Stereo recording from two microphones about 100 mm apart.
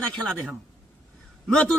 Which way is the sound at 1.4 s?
10° left (ahead or behind).